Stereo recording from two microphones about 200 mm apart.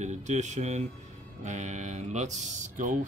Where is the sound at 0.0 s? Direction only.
35° right (ahead or behind).